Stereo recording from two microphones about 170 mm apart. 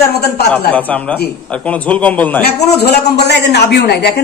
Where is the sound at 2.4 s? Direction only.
75° left (ahead or behind).